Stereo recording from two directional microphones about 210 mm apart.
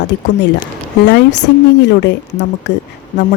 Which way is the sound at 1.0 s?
75° left (ahead or behind).